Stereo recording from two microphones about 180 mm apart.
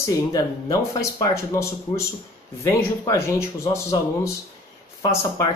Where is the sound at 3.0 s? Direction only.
15° left (ahead or behind).